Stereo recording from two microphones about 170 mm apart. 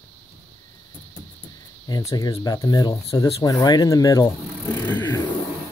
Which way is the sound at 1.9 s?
20° left (ahead or behind).